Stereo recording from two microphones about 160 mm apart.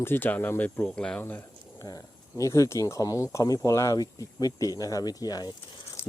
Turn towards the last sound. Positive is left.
turn(degrees=25)  # may be behind; listen again after turning